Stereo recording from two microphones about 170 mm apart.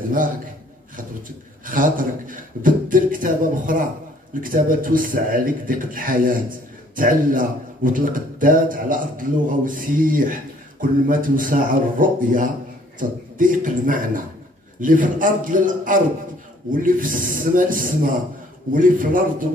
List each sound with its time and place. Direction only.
1.7 s a man's voice: 55° right (ahead or behind)